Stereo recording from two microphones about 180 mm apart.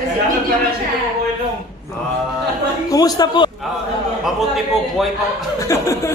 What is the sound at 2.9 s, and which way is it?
Speech, 20° left (ahead or behind).